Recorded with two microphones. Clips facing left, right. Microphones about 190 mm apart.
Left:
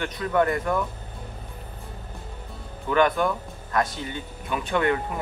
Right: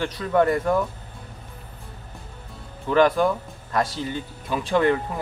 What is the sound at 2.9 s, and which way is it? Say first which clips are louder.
Speech: right 3 dB; 30° right (ahead or behind).